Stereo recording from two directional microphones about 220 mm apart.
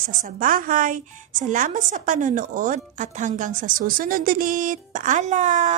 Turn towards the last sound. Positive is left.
turn(degrees=-35)  # may be behind; listen again after turning